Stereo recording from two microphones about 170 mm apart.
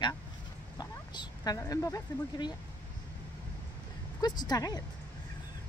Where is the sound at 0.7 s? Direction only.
25° left (ahead or behind).